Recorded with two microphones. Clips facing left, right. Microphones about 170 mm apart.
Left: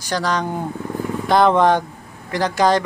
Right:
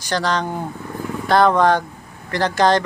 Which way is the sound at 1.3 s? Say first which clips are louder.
Even; 20° left (ahead or behind).